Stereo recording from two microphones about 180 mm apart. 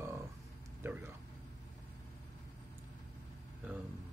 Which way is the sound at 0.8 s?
15° right (ahead or behind).